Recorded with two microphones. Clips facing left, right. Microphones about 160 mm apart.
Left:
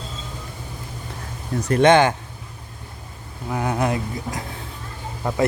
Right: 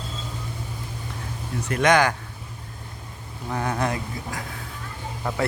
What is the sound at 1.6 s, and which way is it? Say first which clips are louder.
Speech: left 5 dB; 30° left (ahead or behind).